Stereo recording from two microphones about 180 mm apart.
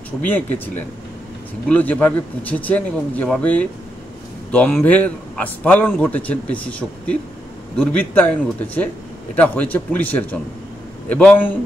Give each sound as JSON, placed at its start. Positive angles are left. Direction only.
{"t": 0.2, "sound": "a man's voice", "side_deg": 10}